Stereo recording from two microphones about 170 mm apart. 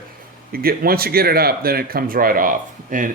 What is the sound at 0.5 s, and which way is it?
Speech, 60° right (ahead or behind).